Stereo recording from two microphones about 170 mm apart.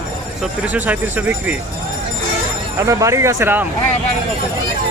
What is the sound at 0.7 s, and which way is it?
Speech, 10° right (ahead or behind).